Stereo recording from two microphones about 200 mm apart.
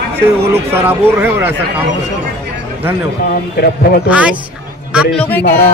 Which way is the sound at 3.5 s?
50° left (ahead or behind).